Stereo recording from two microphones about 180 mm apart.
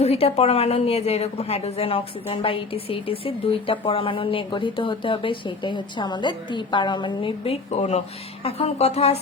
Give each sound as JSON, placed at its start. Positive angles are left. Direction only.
{"t": 0.0, "sound": "a woman's voice", "side_deg": 35}